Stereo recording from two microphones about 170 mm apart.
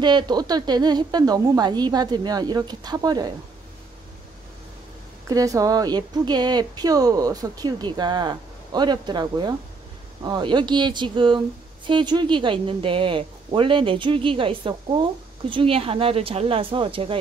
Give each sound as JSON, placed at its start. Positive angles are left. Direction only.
{"t": 0.0, "sound": "speech", "side_deg": -25}
{"t": 5.3, "sound": "speech", "side_deg": -20}